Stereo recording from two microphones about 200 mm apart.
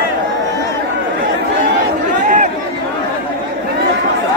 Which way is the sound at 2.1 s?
40° right (ahead or behind).